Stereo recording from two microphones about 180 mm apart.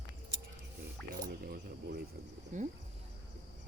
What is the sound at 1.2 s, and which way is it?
Keys jangling, 55° right (ahead or behind).